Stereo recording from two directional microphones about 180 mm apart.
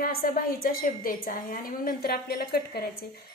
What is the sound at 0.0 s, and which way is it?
A woman's voice, 50° left (ahead or behind).